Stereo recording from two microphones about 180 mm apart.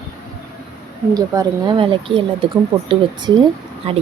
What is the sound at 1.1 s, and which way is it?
Speech, 20° right (ahead or behind).